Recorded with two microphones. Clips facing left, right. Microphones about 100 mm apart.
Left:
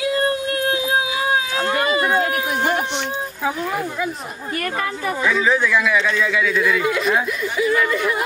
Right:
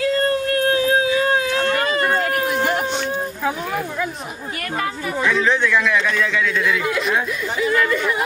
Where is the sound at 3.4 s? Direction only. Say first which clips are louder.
Left 3 dB; 5° left (ahead or behind).